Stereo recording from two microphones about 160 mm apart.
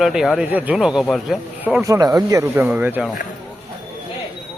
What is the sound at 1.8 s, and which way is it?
Speech, 20° right (ahead or behind).